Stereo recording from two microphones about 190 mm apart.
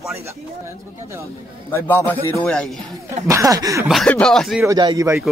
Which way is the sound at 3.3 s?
15° right (ahead or behind).